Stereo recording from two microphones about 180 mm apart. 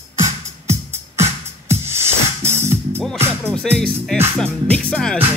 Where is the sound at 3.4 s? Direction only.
5° left (ahead or behind).